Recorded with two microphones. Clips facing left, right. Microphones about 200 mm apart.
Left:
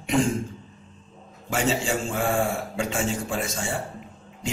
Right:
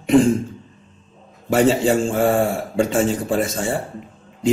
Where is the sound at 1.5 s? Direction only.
45° right (ahead or behind).